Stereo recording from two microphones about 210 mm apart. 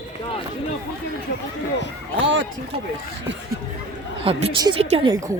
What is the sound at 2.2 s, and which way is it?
Speech, 60° right (ahead or behind).